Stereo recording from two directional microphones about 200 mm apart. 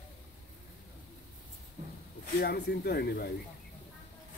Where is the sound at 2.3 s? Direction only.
55° left (ahead or behind).